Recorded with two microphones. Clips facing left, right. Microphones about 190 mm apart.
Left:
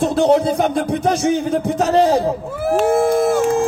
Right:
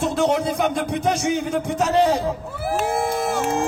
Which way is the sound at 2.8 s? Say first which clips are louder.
Left 9 dB; 50° left (ahead or behind).